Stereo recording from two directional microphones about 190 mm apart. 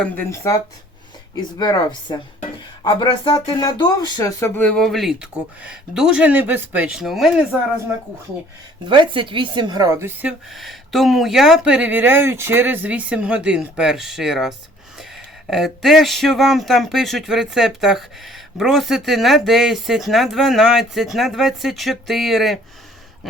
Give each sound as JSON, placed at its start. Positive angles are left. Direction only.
{"t": 0.0, "sound": "speech", "side_deg": 10}
{"t": 8.9, "sound": "speech", "side_deg": -25}